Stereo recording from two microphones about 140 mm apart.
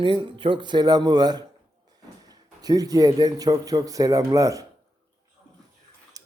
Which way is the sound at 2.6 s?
25° right (ahead or behind).